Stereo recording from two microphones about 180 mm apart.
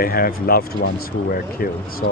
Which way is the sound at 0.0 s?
55° left (ahead or behind).